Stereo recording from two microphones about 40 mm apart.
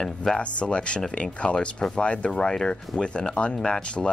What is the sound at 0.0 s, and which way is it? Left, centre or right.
Speech, centre.